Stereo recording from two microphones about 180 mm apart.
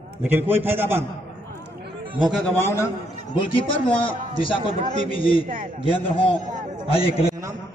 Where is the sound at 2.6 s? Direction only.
15° left (ahead or behind).